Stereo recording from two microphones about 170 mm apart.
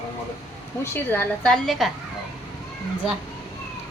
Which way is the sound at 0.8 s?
15° left (ahead or behind).